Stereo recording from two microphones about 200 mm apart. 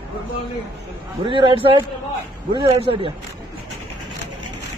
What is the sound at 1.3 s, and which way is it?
Speech, 25° right (ahead or behind).